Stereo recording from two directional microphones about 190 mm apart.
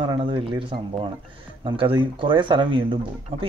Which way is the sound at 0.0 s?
25° right (ahead or behind).